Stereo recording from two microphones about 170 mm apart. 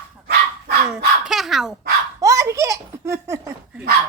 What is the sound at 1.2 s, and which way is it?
Speech, centre (ahead or behind).